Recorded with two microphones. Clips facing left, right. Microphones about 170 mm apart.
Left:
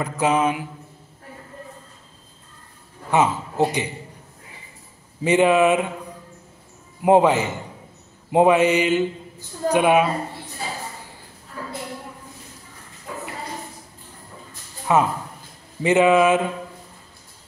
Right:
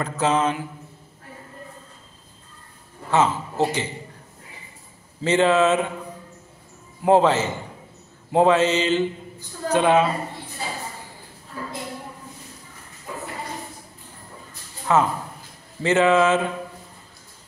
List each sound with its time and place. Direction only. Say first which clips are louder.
0.0 s a man's voice: left 1 dB; 10° left (ahead or behind)
3.1 s a man's voice: left 1 dB; 15° left (ahead or behind)
5.2 s a man's voice: left 2 dB; 15° left (ahead or behind)
7.0 s a man's voice: left 1 dB; 15° left (ahead or behind)
14.9 s a man's voice: left 1 dB; 15° left (ahead or behind)